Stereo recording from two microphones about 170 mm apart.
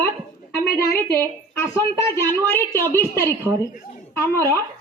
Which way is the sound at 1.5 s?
15° left (ahead or behind).